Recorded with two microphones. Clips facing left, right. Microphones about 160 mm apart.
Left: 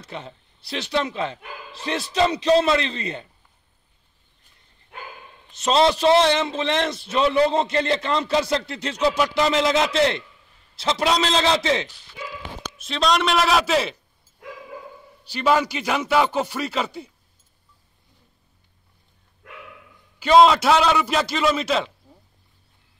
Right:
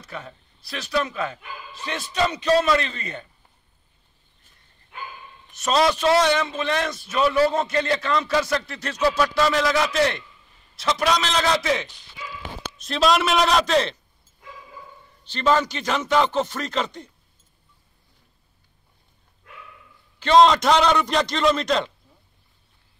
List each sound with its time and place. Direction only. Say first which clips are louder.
0.0 s a man's voice: left 1 dB; 25° left (ahead or behind)
5.6 s a man's voice: left 2 dB; 25° left (ahead or behind)
12.6 s a man's voice: right 2 dB; centre (ahead or behind)
15.2 s speech: left 1 dB; 10° left (ahead or behind)
20.2 s a man's voice: left 1 dB; 10° left (ahead or behind)